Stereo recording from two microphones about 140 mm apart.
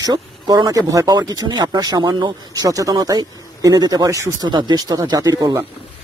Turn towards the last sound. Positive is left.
turn(degrees=-30)  # may be behind; listen again after turning